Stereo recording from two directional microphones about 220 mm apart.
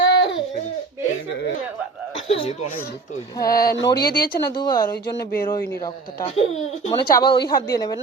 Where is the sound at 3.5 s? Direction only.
45° left (ahead or behind).